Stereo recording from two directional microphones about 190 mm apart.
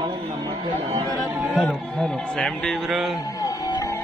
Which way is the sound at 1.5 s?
Centre (ahead or behind).